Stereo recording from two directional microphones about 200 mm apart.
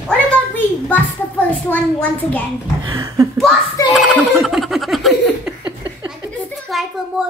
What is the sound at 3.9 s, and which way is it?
Giggle, centre (ahead or behind).